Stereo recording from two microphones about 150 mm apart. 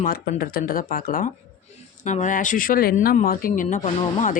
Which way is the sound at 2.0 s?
55° left (ahead or behind).